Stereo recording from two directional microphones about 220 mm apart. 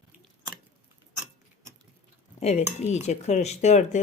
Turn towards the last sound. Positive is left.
turn(degrees=30)  # may be behind; listen again after turning